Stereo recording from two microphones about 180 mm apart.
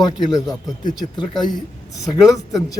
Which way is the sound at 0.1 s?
20° left (ahead or behind).